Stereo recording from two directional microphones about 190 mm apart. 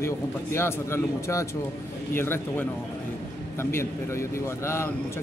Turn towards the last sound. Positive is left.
turn(degrees=15)  # may be behind; listen again after turning